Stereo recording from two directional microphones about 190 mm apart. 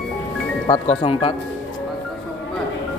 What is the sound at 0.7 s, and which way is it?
Speech, 30° left (ahead or behind).